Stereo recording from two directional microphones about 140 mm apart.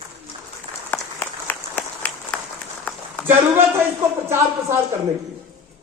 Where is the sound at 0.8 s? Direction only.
15° left (ahead or behind).